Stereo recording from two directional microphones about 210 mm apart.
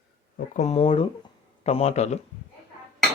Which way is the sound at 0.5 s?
30° left (ahead or behind).